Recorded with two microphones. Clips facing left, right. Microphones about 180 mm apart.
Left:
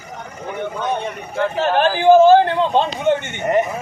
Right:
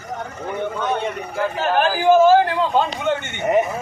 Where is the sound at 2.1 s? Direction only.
30° left (ahead or behind).